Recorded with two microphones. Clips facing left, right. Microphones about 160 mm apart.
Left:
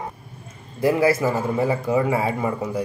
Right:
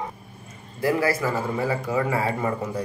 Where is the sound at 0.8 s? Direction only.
20° left (ahead or behind).